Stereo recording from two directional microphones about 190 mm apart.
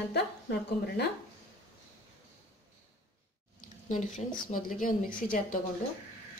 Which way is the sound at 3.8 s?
40° left (ahead or behind).